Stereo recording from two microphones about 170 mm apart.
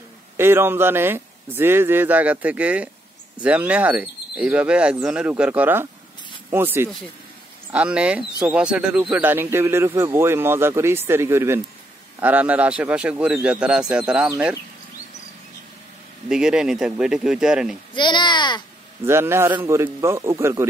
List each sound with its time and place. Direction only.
0.4 s speech: 15° right (ahead or behind)
14.3 s speech: 15° right (ahead or behind)
16.3 s speech: 5° right (ahead or behind)
17.9 s speech: 25° left (ahead or behind)
19.0 s speech: 15° right (ahead or behind)